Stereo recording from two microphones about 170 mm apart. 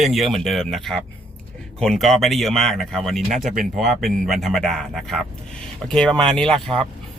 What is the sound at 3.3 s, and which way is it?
Speech, 50° right (ahead or behind).